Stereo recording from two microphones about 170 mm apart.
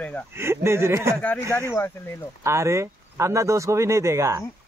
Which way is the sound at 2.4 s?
15° right (ahead or behind).